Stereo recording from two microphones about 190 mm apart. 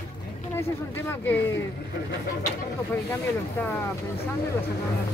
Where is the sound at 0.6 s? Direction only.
10° left (ahead or behind).